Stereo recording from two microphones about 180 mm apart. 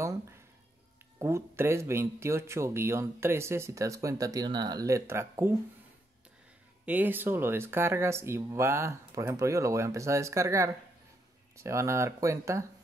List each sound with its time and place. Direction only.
1.2 s speech: 15° right (ahead or behind)
6.9 s speech: 10° right (ahead or behind)